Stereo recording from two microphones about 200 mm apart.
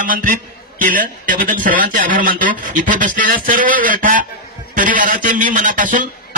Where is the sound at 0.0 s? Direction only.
45° right (ahead or behind).